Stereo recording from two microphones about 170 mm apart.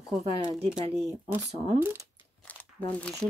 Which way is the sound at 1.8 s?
15° right (ahead or behind).